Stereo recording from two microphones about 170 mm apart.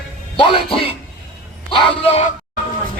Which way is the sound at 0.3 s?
30° left (ahead or behind).